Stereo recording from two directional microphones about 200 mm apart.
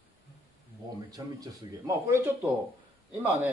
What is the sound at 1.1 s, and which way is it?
Speech, 15° right (ahead or behind).